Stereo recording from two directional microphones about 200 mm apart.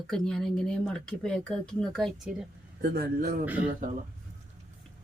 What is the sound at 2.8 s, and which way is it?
Speech, 50° right (ahead or behind).